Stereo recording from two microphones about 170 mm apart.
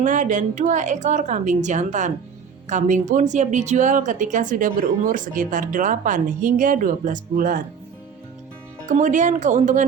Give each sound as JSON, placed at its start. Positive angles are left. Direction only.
{"t": 0.0, "sound": "speech", "side_deg": -50}
{"t": 8.9, "sound": "speech", "side_deg": -45}